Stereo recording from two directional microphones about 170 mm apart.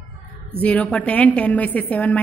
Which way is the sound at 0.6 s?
10° left (ahead or behind).